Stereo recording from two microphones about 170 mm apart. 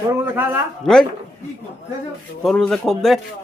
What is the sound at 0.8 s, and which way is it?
Speech, 5° left (ahead or behind).